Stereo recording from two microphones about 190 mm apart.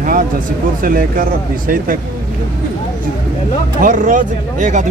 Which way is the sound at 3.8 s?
45° right (ahead or behind).